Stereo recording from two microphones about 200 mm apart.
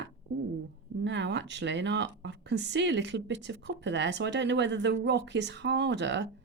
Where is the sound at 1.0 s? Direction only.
60° right (ahead or behind).